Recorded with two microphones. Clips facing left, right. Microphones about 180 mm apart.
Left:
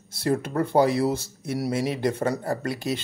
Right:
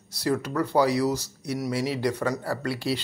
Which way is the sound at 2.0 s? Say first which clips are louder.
Left 2 dB; 25° left (ahead or behind).